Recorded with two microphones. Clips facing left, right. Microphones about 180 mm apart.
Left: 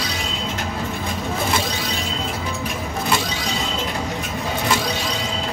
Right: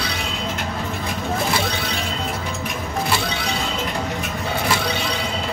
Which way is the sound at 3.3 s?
60° right (ahead or behind).